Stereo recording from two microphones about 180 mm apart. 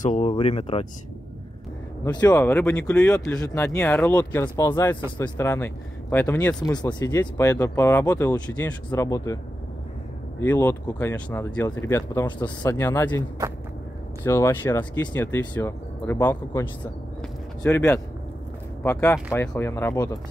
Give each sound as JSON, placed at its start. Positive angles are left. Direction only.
{"t": 0.0, "sound": "speech", "side_deg": 40}
{"t": 2.0, "sound": "speech", "side_deg": 25}
{"t": 2.3, "sound": "speech", "side_deg": 10}
{"t": 3.4, "sound": "speech", "side_deg": 15}
{"t": 6.6, "sound": "speech", "side_deg": 25}
{"t": 10.4, "sound": "speech", "side_deg": 10}
{"t": 14.2, "sound": "speech", "side_deg": 15}
{"t": 17.2, "sound": "a sound", "side_deg": 10}
{"t": 18.8, "sound": "speech", "side_deg": 10}